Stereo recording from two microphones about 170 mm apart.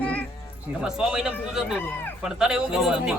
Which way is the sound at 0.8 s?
5° right (ahead or behind).